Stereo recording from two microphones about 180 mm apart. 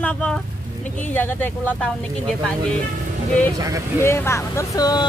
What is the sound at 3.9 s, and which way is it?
Speech, 15° left (ahead or behind).